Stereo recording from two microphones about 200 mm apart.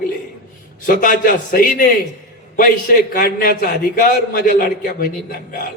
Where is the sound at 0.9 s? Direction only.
40° left (ahead or behind).